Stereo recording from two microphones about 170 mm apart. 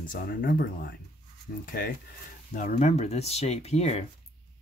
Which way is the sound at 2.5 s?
45° left (ahead or behind).